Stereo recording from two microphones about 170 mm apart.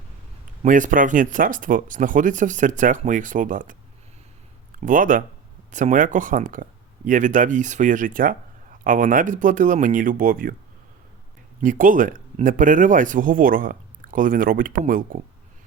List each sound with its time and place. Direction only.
0.6 s speech: 50° right (ahead or behind)
11.6 s speech: 50° right (ahead or behind)